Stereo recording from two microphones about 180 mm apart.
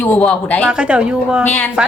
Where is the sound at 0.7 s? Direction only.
5° right (ahead or behind).